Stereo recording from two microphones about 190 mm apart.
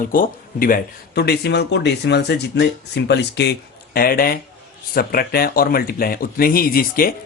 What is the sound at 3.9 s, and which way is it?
Speech, 50° left (ahead or behind).